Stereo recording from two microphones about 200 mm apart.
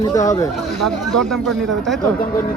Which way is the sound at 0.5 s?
Centre (ahead or behind).